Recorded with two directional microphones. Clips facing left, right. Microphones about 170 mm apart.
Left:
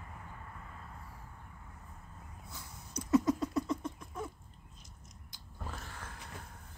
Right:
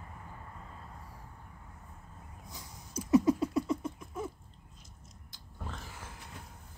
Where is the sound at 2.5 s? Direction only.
15° right (ahead or behind).